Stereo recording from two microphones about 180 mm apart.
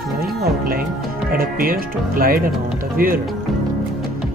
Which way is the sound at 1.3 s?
55° right (ahead or behind).